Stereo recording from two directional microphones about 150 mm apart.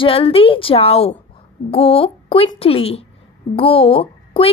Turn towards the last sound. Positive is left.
turn(degrees=40)  # may be behind; listen again after turning